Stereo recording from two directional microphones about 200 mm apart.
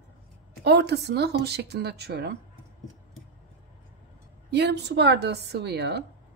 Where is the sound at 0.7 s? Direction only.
55° right (ahead or behind).